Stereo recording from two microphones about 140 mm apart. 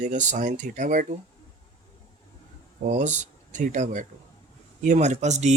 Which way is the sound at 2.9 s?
60° right (ahead or behind).